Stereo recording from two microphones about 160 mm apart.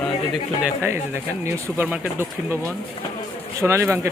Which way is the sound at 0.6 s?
10° right (ahead or behind).